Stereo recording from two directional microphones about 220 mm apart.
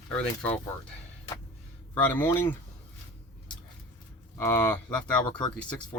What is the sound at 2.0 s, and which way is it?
Speech, 10° left (ahead or behind).